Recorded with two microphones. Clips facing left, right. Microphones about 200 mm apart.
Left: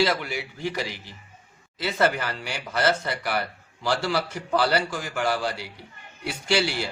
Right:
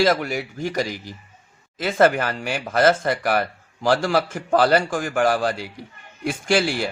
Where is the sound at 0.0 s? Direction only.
45° right (ahead or behind).